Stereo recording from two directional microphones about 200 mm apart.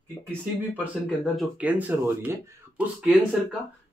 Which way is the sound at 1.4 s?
5° right (ahead or behind).